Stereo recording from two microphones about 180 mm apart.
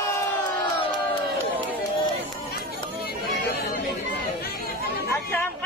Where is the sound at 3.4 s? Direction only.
65° left (ahead or behind).